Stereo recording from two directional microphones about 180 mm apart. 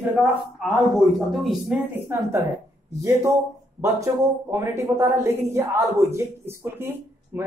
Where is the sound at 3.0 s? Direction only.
15° right (ahead or behind).